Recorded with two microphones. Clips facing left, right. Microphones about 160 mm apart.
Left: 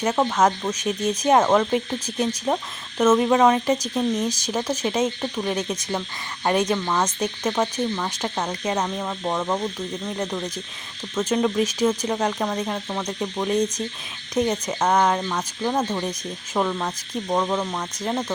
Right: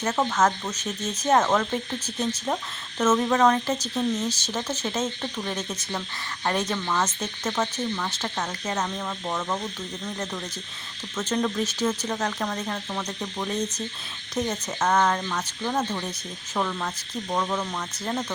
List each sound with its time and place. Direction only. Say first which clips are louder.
0.0 s speech: left 3 dB; 15° left (ahead or behind)
11.1 s speech: left 5 dB; 10° left (ahead or behind)